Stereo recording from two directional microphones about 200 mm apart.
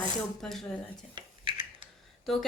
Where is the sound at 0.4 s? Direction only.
Centre (ahead or behind).